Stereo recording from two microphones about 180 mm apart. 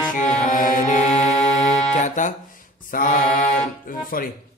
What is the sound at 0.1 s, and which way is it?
Music, 45° left (ahead or behind).